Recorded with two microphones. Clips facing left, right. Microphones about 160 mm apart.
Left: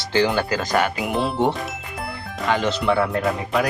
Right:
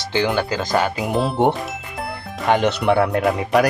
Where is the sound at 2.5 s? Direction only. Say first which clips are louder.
Right 4 dB; 60° right (ahead or behind).